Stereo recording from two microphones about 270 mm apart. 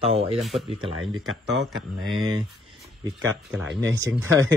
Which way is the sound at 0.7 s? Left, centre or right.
Centre.